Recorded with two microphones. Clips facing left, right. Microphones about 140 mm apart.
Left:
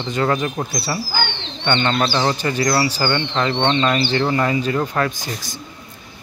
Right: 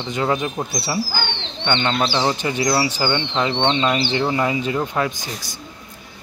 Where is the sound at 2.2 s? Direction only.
15° right (ahead or behind).